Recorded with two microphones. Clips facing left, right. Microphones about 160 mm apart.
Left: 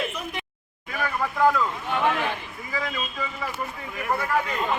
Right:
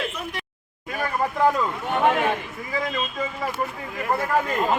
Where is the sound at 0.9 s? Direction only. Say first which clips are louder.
Right 2 dB; 40° right (ahead or behind).